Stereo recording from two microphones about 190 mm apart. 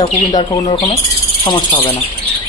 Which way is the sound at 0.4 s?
15° left (ahead or behind).